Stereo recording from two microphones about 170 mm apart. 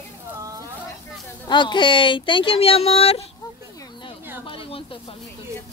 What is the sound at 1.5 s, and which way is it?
Speech, 25° left (ahead or behind).